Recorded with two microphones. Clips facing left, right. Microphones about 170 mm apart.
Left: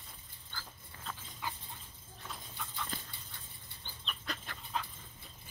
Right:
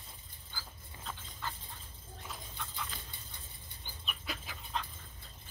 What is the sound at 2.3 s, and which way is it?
Horse, centre (ahead or behind).